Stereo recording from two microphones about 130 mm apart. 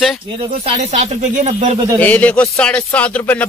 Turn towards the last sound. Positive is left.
turn(degrees=10)  # may be behind; listen again after turning